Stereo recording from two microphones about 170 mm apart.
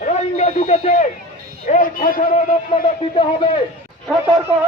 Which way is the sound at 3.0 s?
35° left (ahead or behind).